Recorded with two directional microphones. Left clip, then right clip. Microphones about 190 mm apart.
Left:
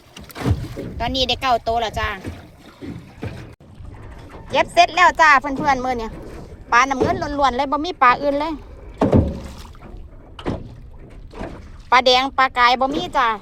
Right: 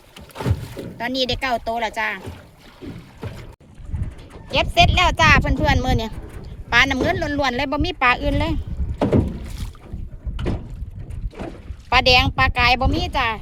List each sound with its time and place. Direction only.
0.9 s speech: 5° right (ahead or behind)
4.4 s a woman's voice: centre (ahead or behind)
11.9 s speech: 10° right (ahead or behind)